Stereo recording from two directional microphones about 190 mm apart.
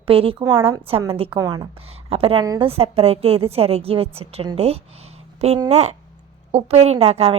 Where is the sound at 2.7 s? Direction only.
30° right (ahead or behind).